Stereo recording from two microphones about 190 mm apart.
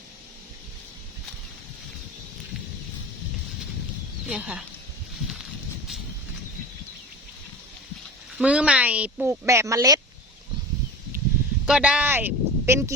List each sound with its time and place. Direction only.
4.3 s speech: 5° right (ahead or behind)
8.4 s speech: 5° right (ahead or behind)
11.6 s speech: 5° right (ahead or behind)